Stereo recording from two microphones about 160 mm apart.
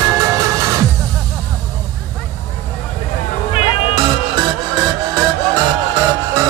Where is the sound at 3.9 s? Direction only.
25° right (ahead or behind).